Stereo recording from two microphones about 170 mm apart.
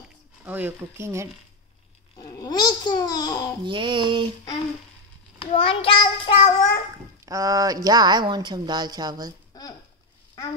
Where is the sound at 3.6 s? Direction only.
30° right (ahead or behind).